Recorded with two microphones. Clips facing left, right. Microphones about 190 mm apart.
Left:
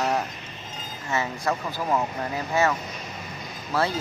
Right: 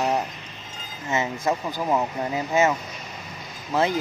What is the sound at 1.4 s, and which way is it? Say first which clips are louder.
Speech: right 2 dB; 15° right (ahead or behind).